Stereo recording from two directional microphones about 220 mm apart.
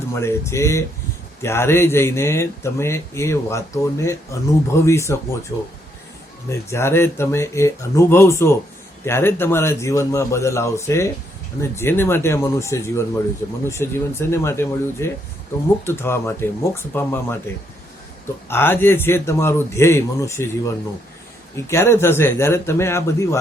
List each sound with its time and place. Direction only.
0.1 s speech: 10° left (ahead or behind)
6.5 s speech: 10° left (ahead or behind)
18.4 s speech: 10° left (ahead or behind)